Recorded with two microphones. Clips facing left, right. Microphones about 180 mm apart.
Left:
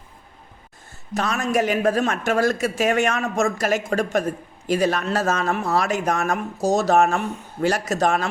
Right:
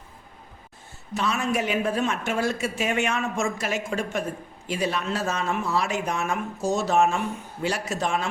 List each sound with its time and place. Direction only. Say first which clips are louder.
1.1 s speech: left 4 dB; 45° left (ahead or behind)